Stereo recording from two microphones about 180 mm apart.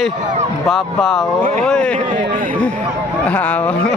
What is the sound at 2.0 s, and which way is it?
Speech, 45° right (ahead or behind).